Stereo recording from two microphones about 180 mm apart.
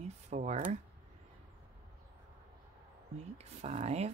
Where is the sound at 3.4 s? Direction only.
35° right (ahead or behind).